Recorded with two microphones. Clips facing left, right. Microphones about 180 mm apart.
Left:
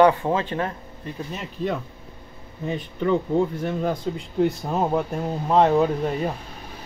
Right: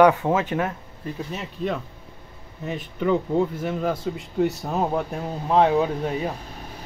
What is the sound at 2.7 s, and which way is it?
Speech, 5° right (ahead or behind).